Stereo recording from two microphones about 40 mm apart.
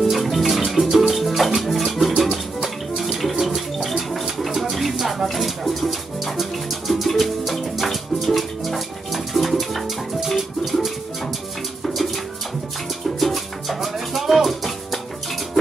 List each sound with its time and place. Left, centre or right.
0.1 s music: centre
13.2 s music: centre